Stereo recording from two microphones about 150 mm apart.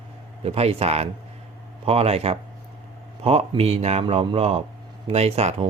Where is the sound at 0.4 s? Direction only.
40° right (ahead or behind).